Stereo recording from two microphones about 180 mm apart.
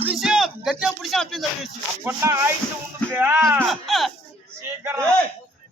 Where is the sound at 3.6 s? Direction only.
Centre (ahead or behind).